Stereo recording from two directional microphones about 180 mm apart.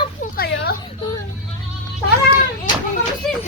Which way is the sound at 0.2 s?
60° left (ahead or behind).